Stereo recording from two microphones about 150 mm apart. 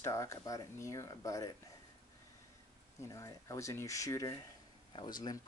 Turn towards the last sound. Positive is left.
turn(degrees=30)  # may be behind; listen again after turning